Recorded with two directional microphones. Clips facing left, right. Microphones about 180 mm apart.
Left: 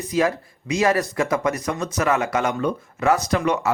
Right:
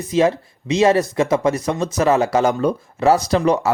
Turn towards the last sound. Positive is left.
turn(degrees=-35)  # may be behind; listen again after turning